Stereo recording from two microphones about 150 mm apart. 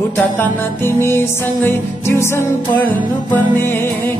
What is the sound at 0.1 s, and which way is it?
Music, 15° left (ahead or behind).